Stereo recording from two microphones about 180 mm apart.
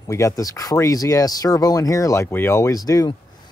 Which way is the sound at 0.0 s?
20° left (ahead or behind).